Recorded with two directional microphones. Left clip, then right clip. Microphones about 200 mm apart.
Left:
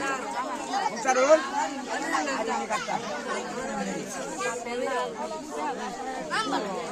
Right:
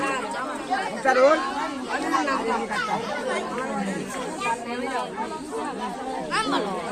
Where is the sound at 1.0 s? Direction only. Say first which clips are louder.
Right 4 dB; 60° left (ahead or behind).